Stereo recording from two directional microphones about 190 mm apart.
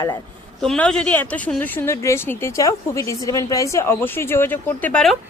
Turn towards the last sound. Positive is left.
turn(degrees=5)  # may be behind; listen again after turning